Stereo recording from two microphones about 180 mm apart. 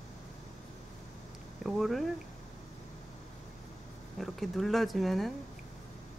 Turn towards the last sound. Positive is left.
turn(degrees=0)  # may be behind; listen again after turning